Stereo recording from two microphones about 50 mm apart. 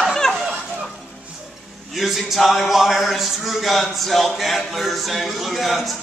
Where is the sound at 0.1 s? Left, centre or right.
Centre.